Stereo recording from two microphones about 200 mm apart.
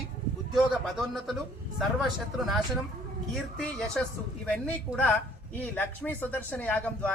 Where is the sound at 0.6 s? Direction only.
Centre (ahead or behind).